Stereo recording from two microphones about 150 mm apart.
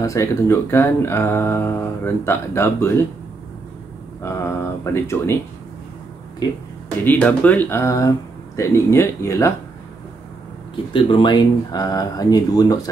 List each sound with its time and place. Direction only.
0.0 s speech: 20° left (ahead or behind)
4.2 s speech: 15° left (ahead or behind)
7.1 s speech: 10° left (ahead or behind)
10.9 s speech: 35° left (ahead or behind)